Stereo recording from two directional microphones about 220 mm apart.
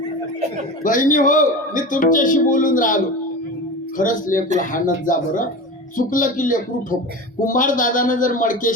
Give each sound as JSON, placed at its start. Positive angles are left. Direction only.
{"t": 0.9, "sound": "a man's voice", "side_deg": 35}